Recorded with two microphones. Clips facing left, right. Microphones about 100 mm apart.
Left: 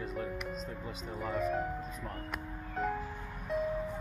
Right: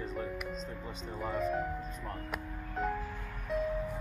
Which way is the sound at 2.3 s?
Centre (ahead or behind).